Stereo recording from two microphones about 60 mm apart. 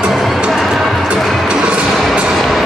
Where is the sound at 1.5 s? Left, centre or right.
Centre.